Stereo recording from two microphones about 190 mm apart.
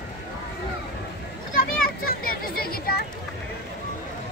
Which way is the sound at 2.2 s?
50° left (ahead or behind).